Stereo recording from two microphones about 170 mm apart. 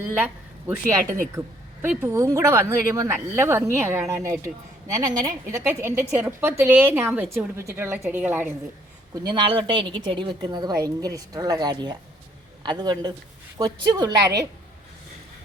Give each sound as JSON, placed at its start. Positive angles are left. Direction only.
{"t": 0.0, "sound": "speech", "side_deg": -10}
{"t": 1.4, "sound": "a woman's voice", "side_deg": -10}
{"t": 9.3, "sound": "a woman's voice", "side_deg": -30}